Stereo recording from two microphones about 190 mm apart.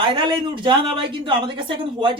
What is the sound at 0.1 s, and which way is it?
A woman's voice, 25° right (ahead or behind).